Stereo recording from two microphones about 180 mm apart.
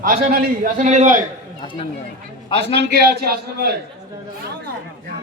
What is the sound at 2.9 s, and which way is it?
Speech, 60° right (ahead or behind).